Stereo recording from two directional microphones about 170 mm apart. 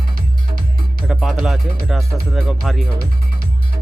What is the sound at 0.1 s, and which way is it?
Music, 55° right (ahead or behind).